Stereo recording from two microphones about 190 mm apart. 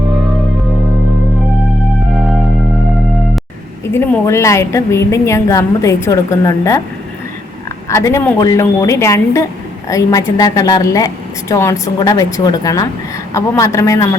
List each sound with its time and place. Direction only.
3.9 s a woman's voice: 15° left (ahead or behind)
7.9 s a woman's voice: 15° left (ahead or behind)